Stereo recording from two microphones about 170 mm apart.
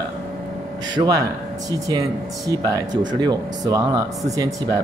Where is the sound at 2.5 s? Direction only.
20° right (ahead or behind).